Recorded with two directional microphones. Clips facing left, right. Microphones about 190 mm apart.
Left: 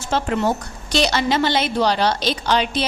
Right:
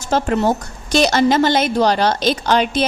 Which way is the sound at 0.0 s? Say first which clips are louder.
Right 3 dB; 40° right (ahead or behind).